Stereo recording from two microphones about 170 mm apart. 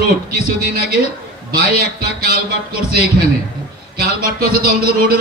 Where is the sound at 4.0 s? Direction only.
60° right (ahead or behind).